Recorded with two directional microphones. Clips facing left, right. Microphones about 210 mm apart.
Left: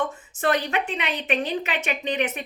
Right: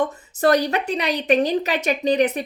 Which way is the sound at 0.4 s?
40° right (ahead or behind).